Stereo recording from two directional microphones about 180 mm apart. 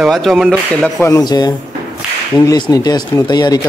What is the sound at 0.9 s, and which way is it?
Speech, 15° left (ahead or behind).